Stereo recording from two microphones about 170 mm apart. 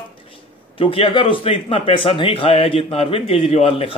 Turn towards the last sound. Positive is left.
turn(degrees=35)  # may be behind; listen again after turning